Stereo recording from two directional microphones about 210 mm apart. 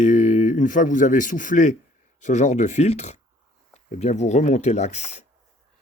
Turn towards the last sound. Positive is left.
turn(degrees=30)  # may be behind; listen again after turning